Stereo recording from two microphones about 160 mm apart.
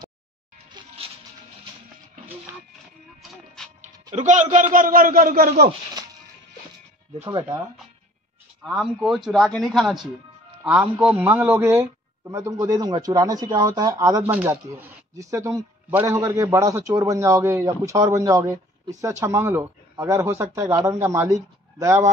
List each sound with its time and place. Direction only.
0.7 s a sound: 35° right (ahead or behind)
4.1 s speech: 45° right (ahead or behind); by 5.5 s 65° right (ahead or behind)
8.6 s speech: 5° right (ahead or behind); by 22.0 s 20° right (ahead or behind)